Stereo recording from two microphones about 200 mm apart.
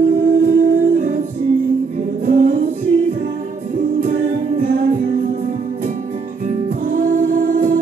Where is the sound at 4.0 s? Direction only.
45° right (ahead or behind).